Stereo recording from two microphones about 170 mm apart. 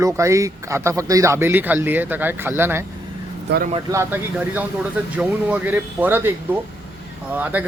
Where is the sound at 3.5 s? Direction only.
85° right.